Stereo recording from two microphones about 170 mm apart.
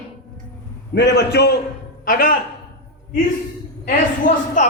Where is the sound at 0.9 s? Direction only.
85° left.